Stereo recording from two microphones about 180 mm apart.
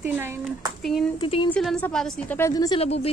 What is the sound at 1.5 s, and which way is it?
Speech, 5° left (ahead or behind).